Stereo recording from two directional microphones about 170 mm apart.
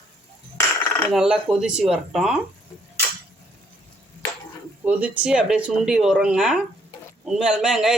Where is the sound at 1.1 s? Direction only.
5° right (ahead or behind).